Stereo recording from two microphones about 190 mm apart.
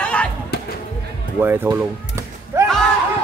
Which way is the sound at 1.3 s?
10° right (ahead or behind).